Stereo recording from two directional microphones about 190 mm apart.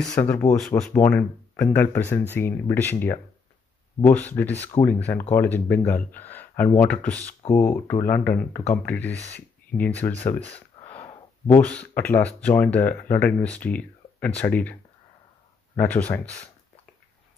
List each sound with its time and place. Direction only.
0.2 s speech: 10° left (ahead or behind)